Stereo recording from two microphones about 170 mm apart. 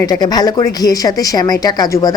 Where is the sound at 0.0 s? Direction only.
20° left (ahead or behind).